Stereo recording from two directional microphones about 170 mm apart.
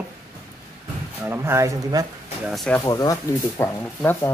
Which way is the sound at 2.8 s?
20° left (ahead or behind).